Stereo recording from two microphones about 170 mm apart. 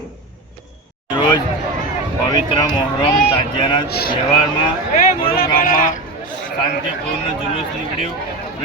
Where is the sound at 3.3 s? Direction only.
30° left (ahead or behind).